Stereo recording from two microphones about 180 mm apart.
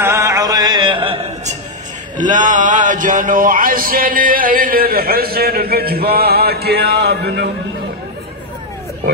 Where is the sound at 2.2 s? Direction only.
45° right (ahead or behind); by 7.5 s 65° right (ahead or behind).